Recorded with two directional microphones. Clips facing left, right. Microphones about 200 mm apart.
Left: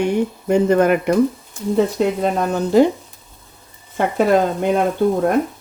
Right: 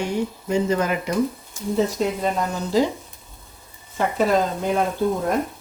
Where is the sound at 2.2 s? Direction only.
60° left (ahead or behind).